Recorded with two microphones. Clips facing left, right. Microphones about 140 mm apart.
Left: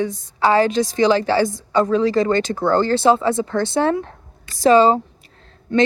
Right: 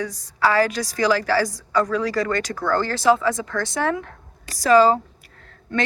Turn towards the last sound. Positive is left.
turn(degrees=25)  # may be behind; listen again after turning